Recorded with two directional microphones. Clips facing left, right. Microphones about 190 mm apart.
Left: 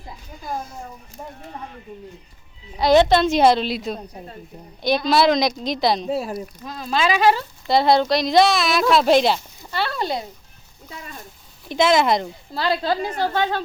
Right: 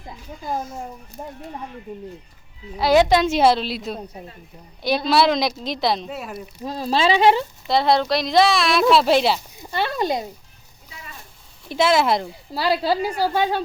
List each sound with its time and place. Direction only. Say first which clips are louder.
2.7 s a woman's voice: left 1 dB; 5° right (ahead or behind)
5.0 s a woman's voice: left 1 dB; centre (ahead or behind)
6.1 s speech: left 8 dB; 30° left (ahead or behind)
6.6 s speech: right 3 dB; 30° right (ahead or behind)
7.7 s a woman's voice: left 2 dB; centre (ahead or behind)
9.6 s a woman's voice: right 2 dB; 15° right (ahead or behind)
10.8 s speech: left 5 dB; 45° left (ahead or behind)
11.7 s a woman's voice: left 1 dB; 5° right (ahead or behind)